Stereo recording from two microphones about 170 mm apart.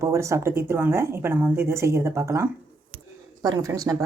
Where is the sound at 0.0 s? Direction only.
15° right (ahead or behind).